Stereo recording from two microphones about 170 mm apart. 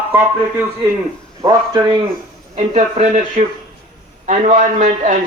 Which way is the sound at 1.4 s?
20° right (ahead or behind).